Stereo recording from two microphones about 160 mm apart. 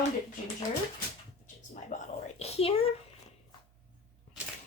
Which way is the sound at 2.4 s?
40° left (ahead or behind).